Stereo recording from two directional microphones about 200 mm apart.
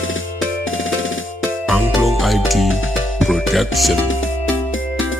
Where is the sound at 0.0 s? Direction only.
75° left (ahead or behind).